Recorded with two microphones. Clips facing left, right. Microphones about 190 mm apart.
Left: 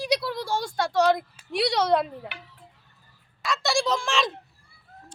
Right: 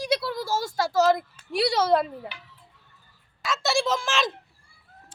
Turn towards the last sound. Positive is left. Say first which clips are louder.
# even
turn(degrees=0)  # may be behind; listen again after turning